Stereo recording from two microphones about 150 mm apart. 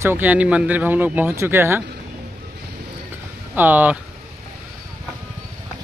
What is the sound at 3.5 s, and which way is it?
Speech, 10° right (ahead or behind).